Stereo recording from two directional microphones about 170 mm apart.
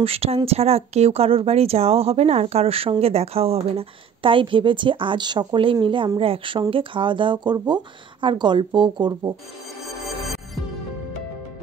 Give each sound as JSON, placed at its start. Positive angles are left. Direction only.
{"t": 0.0, "sound": "speech", "side_deg": -35}